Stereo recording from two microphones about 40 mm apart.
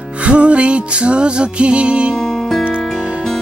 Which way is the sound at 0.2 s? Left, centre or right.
Right.